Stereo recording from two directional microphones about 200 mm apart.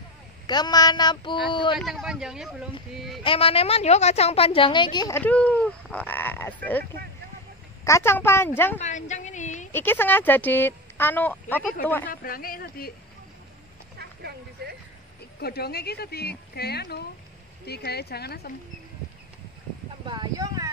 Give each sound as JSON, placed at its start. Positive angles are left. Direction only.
{"t": 0.5, "sound": "a woman's voice", "side_deg": 20}
{"t": 1.8, "sound": "a man's voice", "side_deg": 0}
{"t": 3.3, "sound": "a woman's voice", "side_deg": 30}
{"t": 5.2, "sound": "speech", "side_deg": 5}
{"t": 7.8, "sound": "a woman's voice", "side_deg": 15}
{"t": 8.7, "sound": "a woman's voice", "side_deg": 35}
{"t": 9.7, "sound": "speech", "side_deg": 10}
{"t": 12.1, "sound": "speech", "side_deg": 45}
{"t": 13.9, "sound": "a sound", "side_deg": -55}
{"t": 15.4, "sound": "speech", "side_deg": 50}
{"t": 20.1, "sound": "speech", "side_deg": -20}